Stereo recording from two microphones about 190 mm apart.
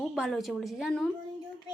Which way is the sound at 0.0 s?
Centre (ahead or behind).